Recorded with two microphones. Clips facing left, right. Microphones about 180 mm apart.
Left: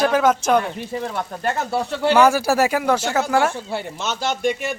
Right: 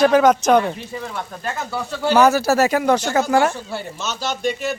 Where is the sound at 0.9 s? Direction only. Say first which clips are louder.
Left 3 dB; 50° left (ahead or behind).